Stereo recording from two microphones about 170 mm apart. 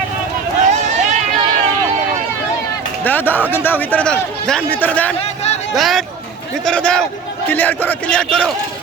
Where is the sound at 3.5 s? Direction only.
10° left (ahead or behind).